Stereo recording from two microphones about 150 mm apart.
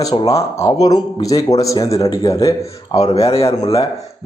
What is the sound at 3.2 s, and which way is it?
Speech, 40° left (ahead or behind).